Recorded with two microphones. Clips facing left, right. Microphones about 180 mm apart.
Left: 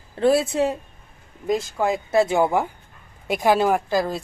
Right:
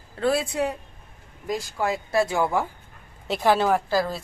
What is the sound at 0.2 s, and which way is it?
A woman's voice, 25° left (ahead or behind).